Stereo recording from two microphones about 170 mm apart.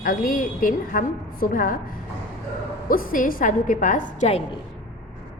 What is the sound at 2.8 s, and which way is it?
A woman's voice, 55° left (ahead or behind).